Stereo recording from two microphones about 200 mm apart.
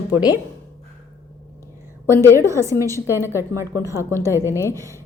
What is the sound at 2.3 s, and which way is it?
A woman's voice, 15° right (ahead or behind).